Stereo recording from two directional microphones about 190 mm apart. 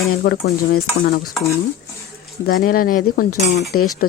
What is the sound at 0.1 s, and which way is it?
Speech, 55° left (ahead or behind).